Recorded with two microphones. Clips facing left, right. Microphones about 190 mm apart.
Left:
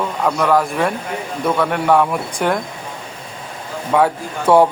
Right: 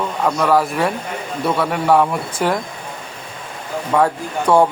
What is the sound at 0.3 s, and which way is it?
Speech, centre (ahead or behind).